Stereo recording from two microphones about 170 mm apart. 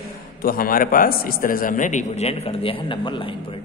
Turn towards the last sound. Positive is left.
turn(degrees=30)  # may be behind; listen again after turning